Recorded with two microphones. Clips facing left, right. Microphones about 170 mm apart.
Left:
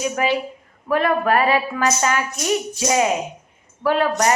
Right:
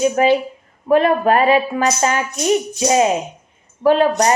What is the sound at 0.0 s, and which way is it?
Speech, 25° right (ahead or behind).